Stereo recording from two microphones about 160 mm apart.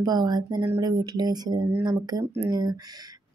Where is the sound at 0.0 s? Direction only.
25° right (ahead or behind).